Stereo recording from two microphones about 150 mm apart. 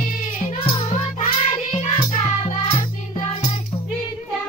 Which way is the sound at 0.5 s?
40° left (ahead or behind).